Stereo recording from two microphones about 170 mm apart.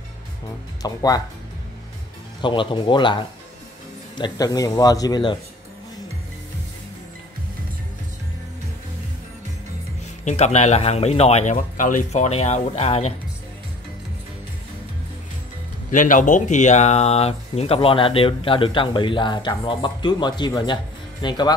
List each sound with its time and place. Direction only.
0.8 s speech: 20° left (ahead or behind)
2.4 s speech: 30° left (ahead or behind)
10.2 s speech: 40° left (ahead or behind)
15.9 s speech: 50° left (ahead or behind); by 21.5 s 25° left (ahead or behind)